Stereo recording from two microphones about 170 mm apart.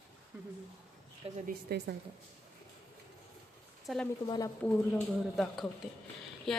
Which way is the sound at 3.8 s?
5° left (ahead or behind).